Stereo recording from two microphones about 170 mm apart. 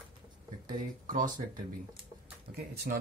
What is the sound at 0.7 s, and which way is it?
Speech, 50° right (ahead or behind).